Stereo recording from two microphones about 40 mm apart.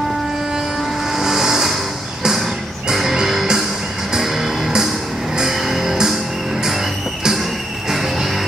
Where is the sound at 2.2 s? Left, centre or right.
Centre.